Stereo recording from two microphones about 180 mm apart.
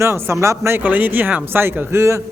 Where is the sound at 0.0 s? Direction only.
15° right (ahead or behind).